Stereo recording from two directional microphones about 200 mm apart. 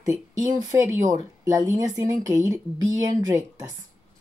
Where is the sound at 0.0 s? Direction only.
15° right (ahead or behind).